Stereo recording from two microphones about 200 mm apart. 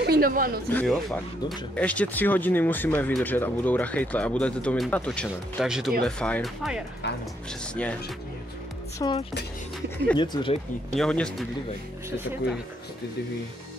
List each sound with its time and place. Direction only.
0.0 s speech: 50° right (ahead or behind)
0.7 s speech: 5° left (ahead or behind)
8.9 s speech: 20° left (ahead or behind)
11.0 s speech: 5° left (ahead or behind)